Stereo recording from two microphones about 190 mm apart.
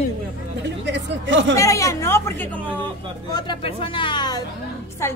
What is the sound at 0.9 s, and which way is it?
Speech, 70° right (ahead or behind).